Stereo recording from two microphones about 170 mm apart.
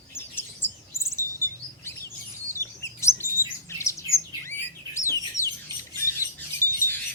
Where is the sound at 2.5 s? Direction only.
15° left (ahead or behind).